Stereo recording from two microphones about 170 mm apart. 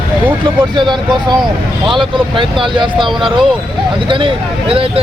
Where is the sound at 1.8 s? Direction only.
Centre (ahead or behind).